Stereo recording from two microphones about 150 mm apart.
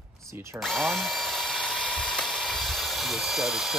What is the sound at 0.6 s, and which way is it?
Drill, centre (ahead or behind).